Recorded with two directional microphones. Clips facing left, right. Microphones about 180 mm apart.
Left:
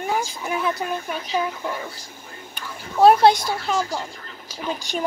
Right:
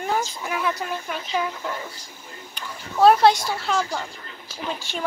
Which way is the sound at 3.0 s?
15° left (ahead or behind).